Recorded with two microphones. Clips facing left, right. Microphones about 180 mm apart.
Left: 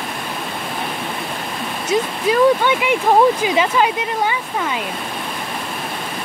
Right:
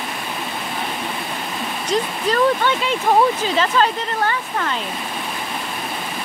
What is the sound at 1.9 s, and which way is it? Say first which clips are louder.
Speech: left 3 dB; 10° left (ahead or behind).